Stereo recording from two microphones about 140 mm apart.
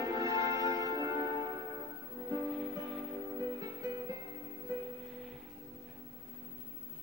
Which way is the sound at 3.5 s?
25° right (ahead or behind).